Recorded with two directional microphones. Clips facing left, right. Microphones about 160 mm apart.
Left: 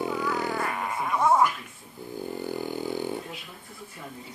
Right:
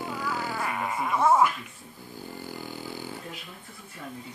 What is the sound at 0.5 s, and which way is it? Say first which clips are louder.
Speech: left 1 dB; centre (ahead or behind).